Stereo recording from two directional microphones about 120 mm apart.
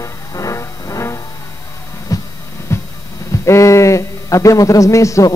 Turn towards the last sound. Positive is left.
turn(degrees=25)  # may be behind; listen again after turning